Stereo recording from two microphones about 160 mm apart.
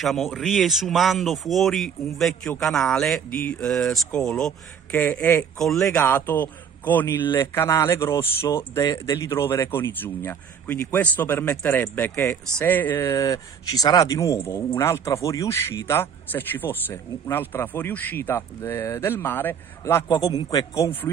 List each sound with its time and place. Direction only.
0.0 s speech: centre (ahead or behind)
5.6 s speech: centre (ahead or behind)
5.9 s speech: 15° left (ahead or behind)